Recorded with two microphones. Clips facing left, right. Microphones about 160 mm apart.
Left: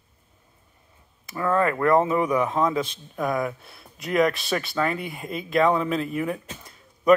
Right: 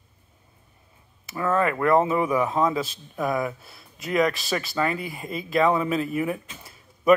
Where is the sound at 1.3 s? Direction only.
20° right (ahead or behind).